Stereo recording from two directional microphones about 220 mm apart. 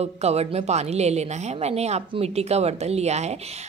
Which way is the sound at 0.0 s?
30° right (ahead or behind).